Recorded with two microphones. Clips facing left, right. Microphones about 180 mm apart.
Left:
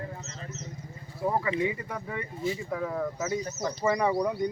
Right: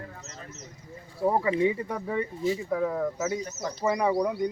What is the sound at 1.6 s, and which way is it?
Speech, 30° right (ahead or behind).